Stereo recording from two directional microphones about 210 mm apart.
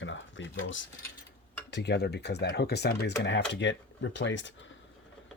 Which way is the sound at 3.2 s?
55° left (ahead or behind).